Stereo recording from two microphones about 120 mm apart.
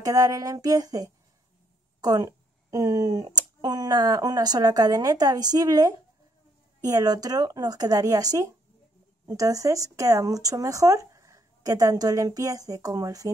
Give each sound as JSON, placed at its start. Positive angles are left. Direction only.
{"t": 0.0, "sound": "speech", "side_deg": -30}